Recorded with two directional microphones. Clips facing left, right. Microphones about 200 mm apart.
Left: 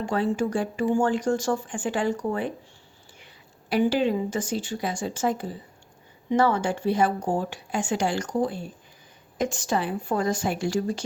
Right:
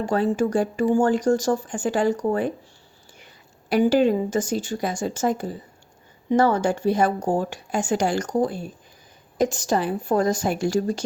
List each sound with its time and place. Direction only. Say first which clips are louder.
0.0 s speech: right 3 dB; 40° right (ahead or behind)
3.7 s speech: right 4 dB; 45° right (ahead or behind)